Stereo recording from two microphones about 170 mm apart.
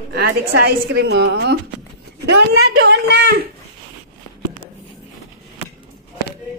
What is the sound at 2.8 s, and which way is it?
Speech, 70° right (ahead or behind).